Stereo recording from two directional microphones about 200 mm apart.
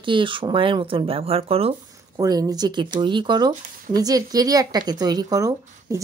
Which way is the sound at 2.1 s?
15° right (ahead or behind).